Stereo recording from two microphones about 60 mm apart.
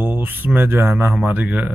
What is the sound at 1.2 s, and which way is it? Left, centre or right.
Speech, right.